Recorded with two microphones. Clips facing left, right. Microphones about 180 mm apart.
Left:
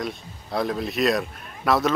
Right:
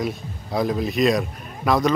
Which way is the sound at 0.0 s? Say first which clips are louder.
Right 4 dB; centre (ahead or behind).